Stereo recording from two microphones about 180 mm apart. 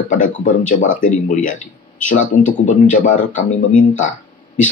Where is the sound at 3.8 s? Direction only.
45° left (ahead or behind).